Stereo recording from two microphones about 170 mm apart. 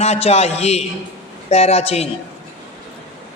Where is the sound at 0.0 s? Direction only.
40° left (ahead or behind).